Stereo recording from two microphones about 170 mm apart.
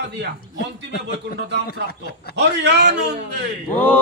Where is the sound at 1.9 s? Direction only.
65° left (ahead or behind).